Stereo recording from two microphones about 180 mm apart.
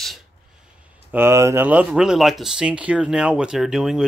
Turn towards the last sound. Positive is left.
turn(degrees=-5)  # may be behind; listen again after turning